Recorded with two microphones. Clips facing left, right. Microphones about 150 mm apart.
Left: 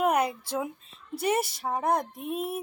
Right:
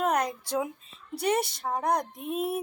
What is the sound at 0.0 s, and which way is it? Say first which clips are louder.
Speech: left 2 dB; 5° left (ahead or behind).